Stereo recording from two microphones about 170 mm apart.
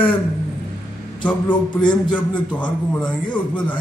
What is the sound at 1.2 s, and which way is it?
A man's voice, 10° left (ahead or behind).